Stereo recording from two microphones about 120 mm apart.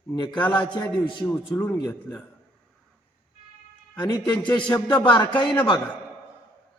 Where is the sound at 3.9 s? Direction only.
35° left (ahead or behind).